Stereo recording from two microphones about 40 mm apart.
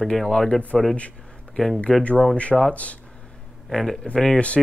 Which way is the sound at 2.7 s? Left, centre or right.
Left.